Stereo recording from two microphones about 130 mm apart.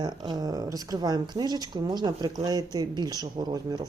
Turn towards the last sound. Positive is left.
turn(degrees=-30)  # may be behind; listen again after turning